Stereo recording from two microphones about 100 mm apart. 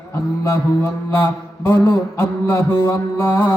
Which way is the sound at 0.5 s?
25° left (ahead or behind).